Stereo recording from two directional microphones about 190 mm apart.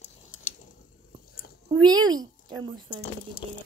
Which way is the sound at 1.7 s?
20° right (ahead or behind).